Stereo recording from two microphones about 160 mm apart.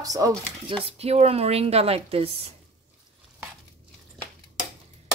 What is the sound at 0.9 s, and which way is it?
A woman's voice, 40° right (ahead or behind).